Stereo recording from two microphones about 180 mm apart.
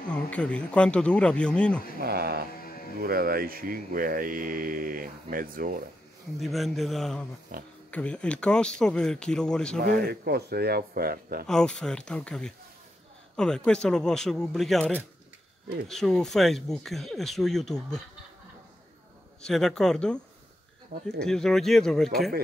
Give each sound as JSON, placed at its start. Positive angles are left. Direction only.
{"t": 0.1, "sound": "speech", "side_deg": 5}
{"t": 2.0, "sound": "a man's voice", "side_deg": -60}
{"t": 6.4, "sound": "speech", "side_deg": 0}
{"t": 7.5, "sound": "speech", "side_deg": -50}
{"t": 7.9, "sound": "speech", "side_deg": 5}
{"t": 9.8, "sound": "a man's voice", "side_deg": -55}
{"t": 11.4, "sound": "speech", "side_deg": 5}
{"t": 19.4, "sound": "speech", "side_deg": 5}
{"t": 21.2, "sound": "speech", "side_deg": 5}